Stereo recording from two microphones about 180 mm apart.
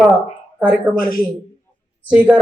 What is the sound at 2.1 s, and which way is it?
Speech, 5° right (ahead or behind).